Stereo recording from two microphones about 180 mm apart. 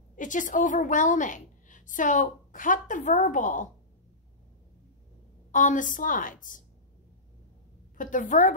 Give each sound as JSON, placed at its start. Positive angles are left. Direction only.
{"t": 0.1, "sound": "a woman's voice", "side_deg": 45}
{"t": 5.5, "sound": "a woman's voice", "side_deg": 45}
{"t": 8.0, "sound": "a woman's voice", "side_deg": 45}